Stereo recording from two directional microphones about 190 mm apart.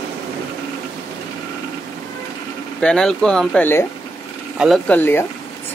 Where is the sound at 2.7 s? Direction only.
5° left (ahead or behind).